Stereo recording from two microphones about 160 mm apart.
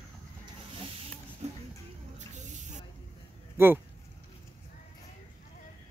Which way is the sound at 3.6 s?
15° right (ahead or behind).